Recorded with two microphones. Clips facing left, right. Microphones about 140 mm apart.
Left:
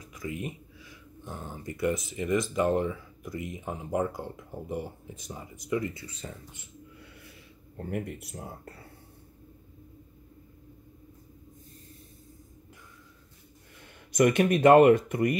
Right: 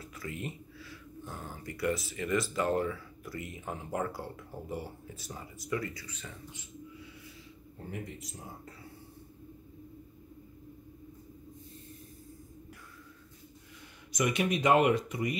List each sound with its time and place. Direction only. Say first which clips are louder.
0.0 s speech: left 4 dB; 15° left (ahead or behind); by 6.3 s 30° left (ahead or behind)
7.7 s speech: left 7 dB; 60° left (ahead or behind)
14.1 s speech: left 7 dB; 55° left (ahead or behind)